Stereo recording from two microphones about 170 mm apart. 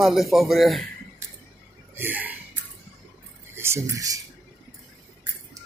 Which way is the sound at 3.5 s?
15° right (ahead or behind).